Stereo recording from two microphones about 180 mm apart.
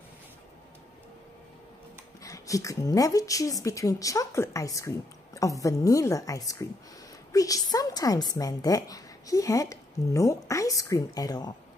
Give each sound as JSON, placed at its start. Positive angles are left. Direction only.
{"t": 2.2, "sound": "a woman's voice", "side_deg": 20}